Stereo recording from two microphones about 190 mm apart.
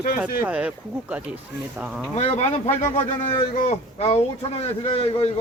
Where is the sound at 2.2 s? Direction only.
35° left (ahead or behind).